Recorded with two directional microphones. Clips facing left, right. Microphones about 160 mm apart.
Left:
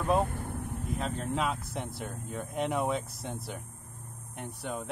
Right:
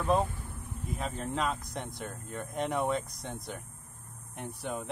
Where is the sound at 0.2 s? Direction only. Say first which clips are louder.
Left 2 dB; 60° left (ahead or behind).